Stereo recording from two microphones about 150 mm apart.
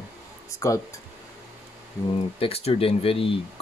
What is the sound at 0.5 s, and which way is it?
Speech, 20° left (ahead or behind).